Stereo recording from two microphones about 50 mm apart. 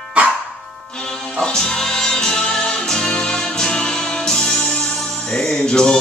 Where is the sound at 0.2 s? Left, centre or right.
Right.